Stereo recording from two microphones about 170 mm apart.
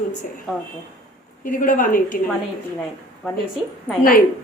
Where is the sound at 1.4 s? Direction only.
55° left (ahead or behind).